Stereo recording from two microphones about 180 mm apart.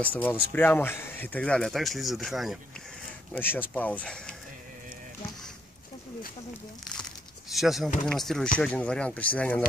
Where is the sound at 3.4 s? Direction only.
10° left (ahead or behind).